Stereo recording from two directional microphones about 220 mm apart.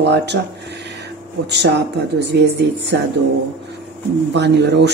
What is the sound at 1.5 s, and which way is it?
Speech, 50° right (ahead or behind).